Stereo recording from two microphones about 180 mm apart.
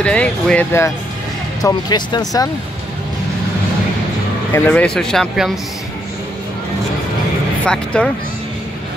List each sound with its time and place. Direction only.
0.0 s speech: 5° left (ahead or behind)
1.6 s speech: 20° left (ahead or behind)
4.6 s speech: 5° left (ahead or behind)
7.6 s speech: 5° left (ahead or behind)